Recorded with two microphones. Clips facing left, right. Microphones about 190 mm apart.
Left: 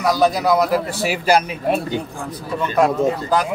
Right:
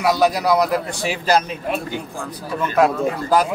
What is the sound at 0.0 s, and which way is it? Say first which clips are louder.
A man's voice: left 1 dB; 5° right (ahead or behind).